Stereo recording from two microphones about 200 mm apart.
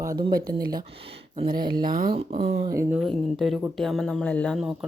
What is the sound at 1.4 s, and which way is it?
Speech, 20° right (ahead or behind).